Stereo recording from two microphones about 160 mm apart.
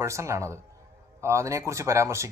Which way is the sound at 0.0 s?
20° right (ahead or behind).